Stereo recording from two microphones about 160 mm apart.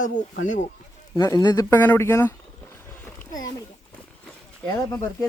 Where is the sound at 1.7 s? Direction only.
10° left (ahead or behind).